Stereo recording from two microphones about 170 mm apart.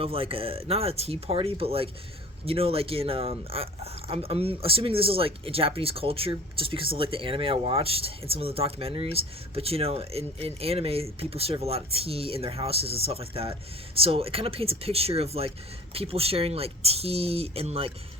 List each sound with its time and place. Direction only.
0.0 s speech: 35° right (ahead or behind)